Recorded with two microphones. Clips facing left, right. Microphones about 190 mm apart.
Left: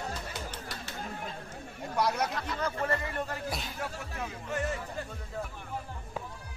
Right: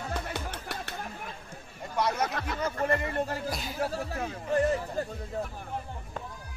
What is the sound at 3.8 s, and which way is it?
Speech, 35° right (ahead or behind).